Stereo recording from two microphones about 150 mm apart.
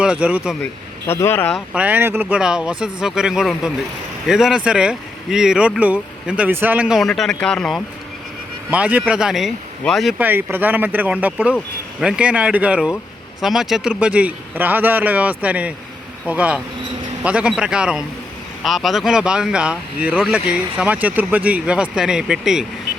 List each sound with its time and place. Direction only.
0.0 s speech: 5° right (ahead or behind)
0.6 s speech: 15° left (ahead or behind)
1.5 s speech: 10° right (ahead or behind)
8.7 s speech: 10° right (ahead or behind)
10.2 s speech: 15° right (ahead or behind)